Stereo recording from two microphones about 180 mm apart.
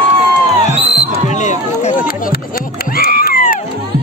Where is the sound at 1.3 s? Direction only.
40° left (ahead or behind).